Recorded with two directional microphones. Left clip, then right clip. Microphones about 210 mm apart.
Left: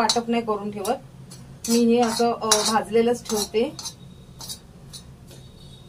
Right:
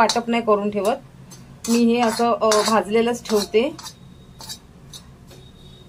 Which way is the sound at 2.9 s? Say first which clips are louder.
Right 2 dB; 50° right (ahead or behind).